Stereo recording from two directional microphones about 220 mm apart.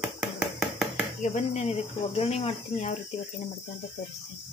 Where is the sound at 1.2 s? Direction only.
30° left (ahead or behind).